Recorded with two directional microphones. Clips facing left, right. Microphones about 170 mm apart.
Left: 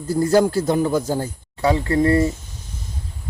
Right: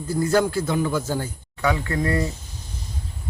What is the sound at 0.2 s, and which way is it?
Speech, 35° left (ahead or behind).